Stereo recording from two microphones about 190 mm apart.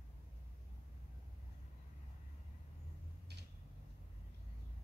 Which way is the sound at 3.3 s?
60° right (ahead or behind).